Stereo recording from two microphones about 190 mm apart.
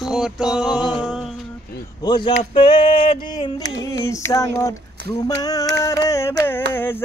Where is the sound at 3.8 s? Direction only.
15° left (ahead or behind).